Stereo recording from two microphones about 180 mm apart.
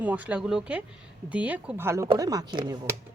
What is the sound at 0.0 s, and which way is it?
A woman's voice, 10° right (ahead or behind).